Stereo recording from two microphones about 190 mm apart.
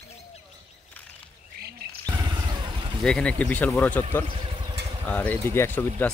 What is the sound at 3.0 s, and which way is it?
Speech, 5° left (ahead or behind).